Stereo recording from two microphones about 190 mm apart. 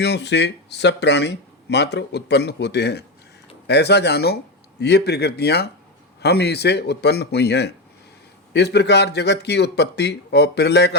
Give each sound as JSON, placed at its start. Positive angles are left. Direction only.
{"t": 0.0, "sound": "speech", "side_deg": 65}